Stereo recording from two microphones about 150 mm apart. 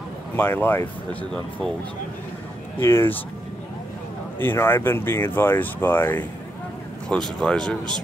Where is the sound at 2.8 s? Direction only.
15° left (ahead or behind).